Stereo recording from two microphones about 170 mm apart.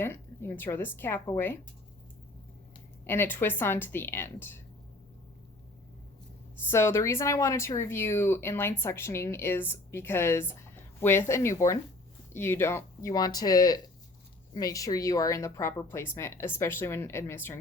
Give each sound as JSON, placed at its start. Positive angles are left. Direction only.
{"t": 0.0, "sound": "speech", "side_deg": 15}
{"t": 3.0, "sound": "speech", "side_deg": 10}
{"t": 6.7, "sound": "speech", "side_deg": 15}